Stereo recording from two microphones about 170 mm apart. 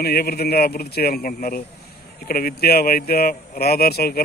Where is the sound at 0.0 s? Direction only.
65° left (ahead or behind).